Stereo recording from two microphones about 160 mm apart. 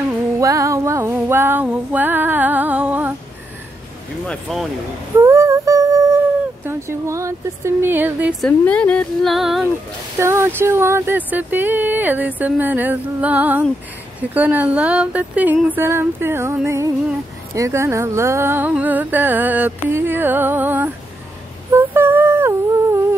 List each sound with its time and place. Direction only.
0.4 s music: 20° right (ahead or behind)
4.3 s speech: centre (ahead or behind)
5.1 s female singing: 15° right (ahead or behind)
6.6 s speech: 15° right (ahead or behind)
8.4 s speech: 5° left (ahead or behind)
10.1 s speech: 15° right (ahead or behind)
21.7 s humming: 15° right (ahead or behind)